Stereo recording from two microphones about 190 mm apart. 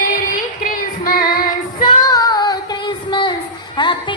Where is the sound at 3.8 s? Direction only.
25° left (ahead or behind).